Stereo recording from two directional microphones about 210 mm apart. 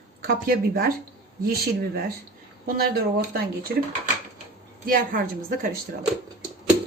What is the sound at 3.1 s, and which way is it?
Speech, 45° right (ahead or behind).